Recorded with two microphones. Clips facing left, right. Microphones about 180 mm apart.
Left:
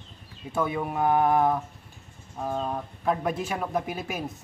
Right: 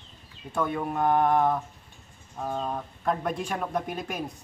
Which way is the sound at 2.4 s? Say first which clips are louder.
Left 1 dB; 5° left (ahead or behind).